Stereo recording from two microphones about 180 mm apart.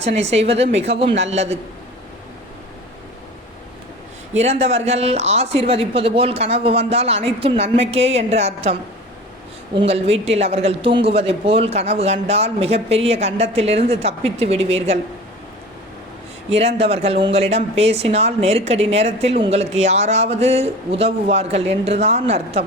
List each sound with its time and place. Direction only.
0.0 s speech: 35° right (ahead or behind)
4.4 s speech: 40° right (ahead or behind)
9.7 s speech: 35° right (ahead or behind)
16.6 s speech: 35° right (ahead or behind)